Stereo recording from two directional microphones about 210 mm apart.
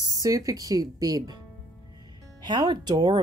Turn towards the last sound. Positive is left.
turn(degrees=-20)  # may be behind; listen again after turning